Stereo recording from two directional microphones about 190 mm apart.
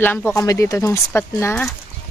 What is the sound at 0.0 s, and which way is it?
Speech, 10° left (ahead or behind).